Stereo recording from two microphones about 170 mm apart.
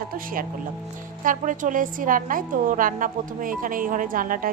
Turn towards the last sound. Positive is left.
turn(degrees=-55)  # may be behind; listen again after turning